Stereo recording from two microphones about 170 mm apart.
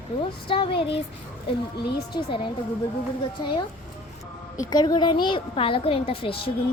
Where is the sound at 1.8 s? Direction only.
70° left (ahead or behind).